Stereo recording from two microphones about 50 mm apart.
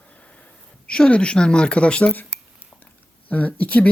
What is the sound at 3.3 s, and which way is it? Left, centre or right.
Speech, left.